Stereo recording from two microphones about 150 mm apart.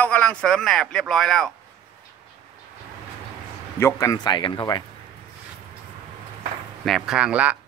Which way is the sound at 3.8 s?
20° left (ahead or behind).